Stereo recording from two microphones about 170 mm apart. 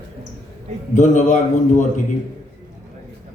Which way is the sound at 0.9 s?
45° left (ahead or behind).